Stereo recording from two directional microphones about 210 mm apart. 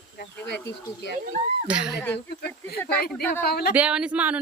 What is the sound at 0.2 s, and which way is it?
Speech, 55° left (ahead or behind).